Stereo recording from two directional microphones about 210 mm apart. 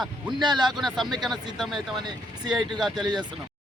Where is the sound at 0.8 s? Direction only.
Centre (ahead or behind).